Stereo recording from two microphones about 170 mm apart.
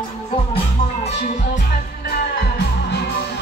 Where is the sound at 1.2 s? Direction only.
45° left (ahead or behind).